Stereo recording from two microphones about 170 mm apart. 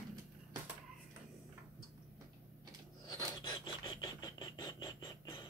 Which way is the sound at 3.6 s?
25° left (ahead or behind).